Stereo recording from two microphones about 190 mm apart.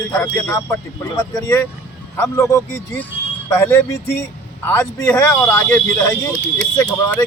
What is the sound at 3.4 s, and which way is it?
Speech, 15° left (ahead or behind).